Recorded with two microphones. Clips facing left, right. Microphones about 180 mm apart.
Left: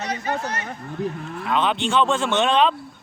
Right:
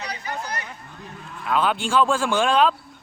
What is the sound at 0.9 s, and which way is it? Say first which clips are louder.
Speech: left 12 dB; 70° left (ahead or behind).